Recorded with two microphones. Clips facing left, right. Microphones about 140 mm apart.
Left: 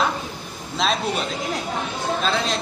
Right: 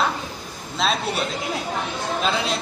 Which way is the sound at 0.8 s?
Centre (ahead or behind).